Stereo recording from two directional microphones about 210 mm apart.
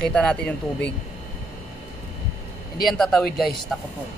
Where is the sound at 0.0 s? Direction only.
5° left (ahead or behind).